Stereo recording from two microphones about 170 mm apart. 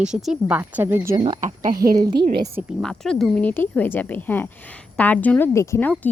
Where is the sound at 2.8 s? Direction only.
5° left (ahead or behind).